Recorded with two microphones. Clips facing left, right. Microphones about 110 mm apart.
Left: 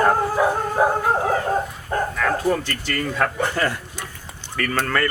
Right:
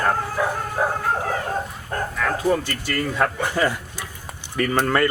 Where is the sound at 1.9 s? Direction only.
5° left (ahead or behind).